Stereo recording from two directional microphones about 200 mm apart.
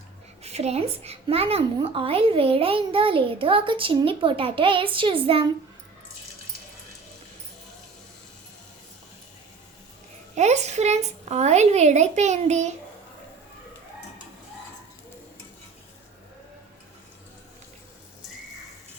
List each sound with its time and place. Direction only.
0.4 s a woman's voice: 30° right (ahead or behind)
10.3 s speech: 35° right (ahead or behind)